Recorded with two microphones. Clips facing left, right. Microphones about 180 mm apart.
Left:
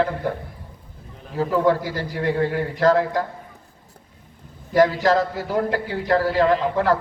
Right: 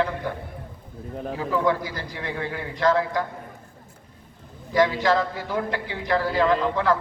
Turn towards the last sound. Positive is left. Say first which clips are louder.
# left 2 dB
turn(degrees=40)  # may be behind; listen again after turning